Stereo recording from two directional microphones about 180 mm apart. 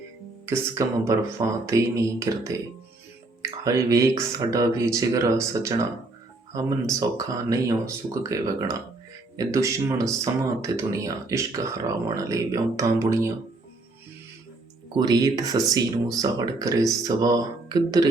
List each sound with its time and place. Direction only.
0.4 s speech: 15° right (ahead or behind)
3.6 s speech: 20° right (ahead or behind)
14.9 s speech: 20° right (ahead or behind)